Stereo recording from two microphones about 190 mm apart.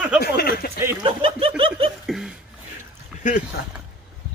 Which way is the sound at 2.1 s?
Centre (ahead or behind).